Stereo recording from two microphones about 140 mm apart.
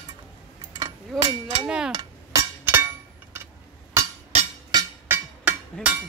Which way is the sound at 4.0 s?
20° right (ahead or behind).